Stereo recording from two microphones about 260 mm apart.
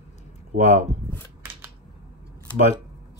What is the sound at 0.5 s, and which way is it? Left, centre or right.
Speech, right.